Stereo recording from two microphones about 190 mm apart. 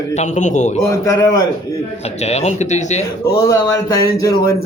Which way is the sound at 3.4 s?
15° left (ahead or behind).